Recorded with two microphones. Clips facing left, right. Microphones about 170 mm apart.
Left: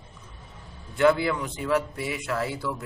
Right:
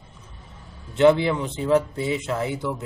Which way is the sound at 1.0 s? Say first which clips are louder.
Right 4 dB; 20° right (ahead or behind).